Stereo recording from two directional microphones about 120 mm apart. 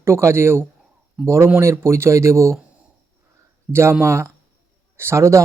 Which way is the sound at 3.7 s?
20° right (ahead or behind).